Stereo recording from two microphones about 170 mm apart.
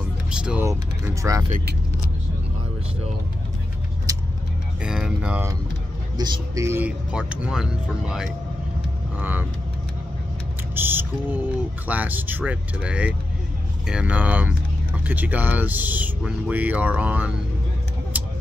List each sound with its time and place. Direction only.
0.3 s speech: 5° right (ahead or behind)
0.7 s speech: 20° right (ahead or behind)
4.1 s vehicle: 20° right (ahead or behind)
4.8 s speech: 5° right (ahead or behind)
6.1 s speech: 25° right (ahead or behind); by 9.5 s 10° right (ahead or behind)
10.7 s a sound: 10° right (ahead or behind)
11.9 s speech: 10° right (ahead or behind)
18.1 s a sound: 10° right (ahead or behind)